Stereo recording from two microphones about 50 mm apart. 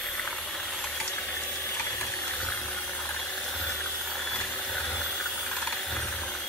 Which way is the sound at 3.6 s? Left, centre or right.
Left.